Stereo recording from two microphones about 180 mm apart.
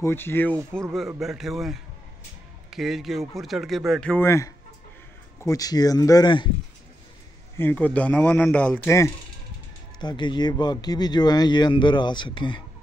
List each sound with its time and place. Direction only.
0.0 s speech: 10° left (ahead or behind)
0.9 s speech: centre (ahead or behind); by 6.5 s 25° left (ahead or behind)
7.5 s speech: 10° left (ahead or behind); by 12.6 s 25° left (ahead or behind)